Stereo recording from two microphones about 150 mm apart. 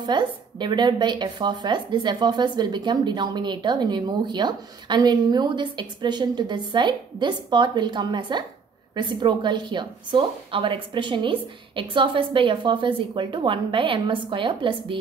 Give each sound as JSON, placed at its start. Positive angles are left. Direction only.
{"t": 0.0, "sound": "a woman's voice", "side_deg": -30}